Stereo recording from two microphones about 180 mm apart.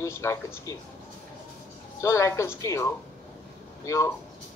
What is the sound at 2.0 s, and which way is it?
A man's voice, 15° left (ahead or behind).